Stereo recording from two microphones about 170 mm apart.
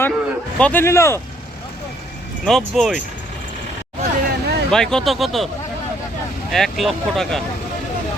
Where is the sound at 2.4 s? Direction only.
Centre (ahead or behind).